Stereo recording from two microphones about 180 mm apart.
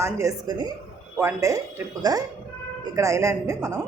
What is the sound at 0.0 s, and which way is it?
A woman's voice, 15° right (ahead or behind).